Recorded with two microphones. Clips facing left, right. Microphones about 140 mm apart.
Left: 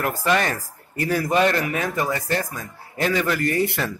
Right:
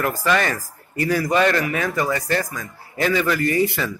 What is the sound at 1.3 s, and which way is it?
Speech, 25° left (ahead or behind).